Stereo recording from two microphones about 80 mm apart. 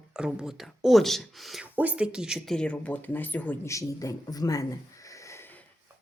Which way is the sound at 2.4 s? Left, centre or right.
Centre.